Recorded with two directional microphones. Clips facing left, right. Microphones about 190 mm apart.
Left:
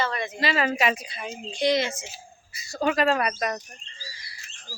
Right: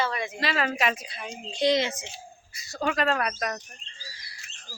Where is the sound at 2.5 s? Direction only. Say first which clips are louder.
Left 4 dB; centre (ahead or behind).